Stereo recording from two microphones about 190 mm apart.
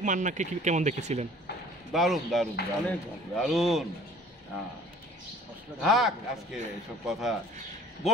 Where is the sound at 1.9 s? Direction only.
Centre (ahead or behind).